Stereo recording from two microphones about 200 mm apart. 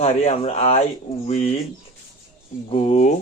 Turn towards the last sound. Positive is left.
turn(degrees=35)  # may be behind; listen again after turning